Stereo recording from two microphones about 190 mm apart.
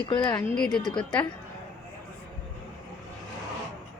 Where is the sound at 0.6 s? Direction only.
Centre (ahead or behind).